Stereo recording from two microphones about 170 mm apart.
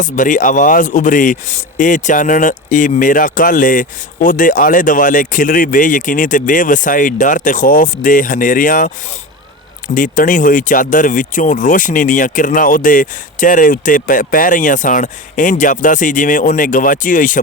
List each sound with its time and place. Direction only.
0.0 s speech: 50° left (ahead or behind)
9.9 s speech: 50° left (ahead or behind)